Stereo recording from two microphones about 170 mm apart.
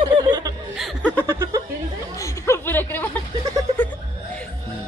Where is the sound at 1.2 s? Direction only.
15° right (ahead or behind).